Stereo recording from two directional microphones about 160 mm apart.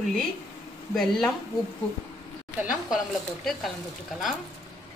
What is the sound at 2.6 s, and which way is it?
Speech, centre (ahead or behind).